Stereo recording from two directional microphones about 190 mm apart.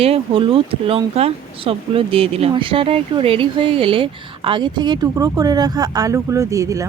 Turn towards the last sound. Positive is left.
turn(degrees=-15)  # may be behind; listen again after turning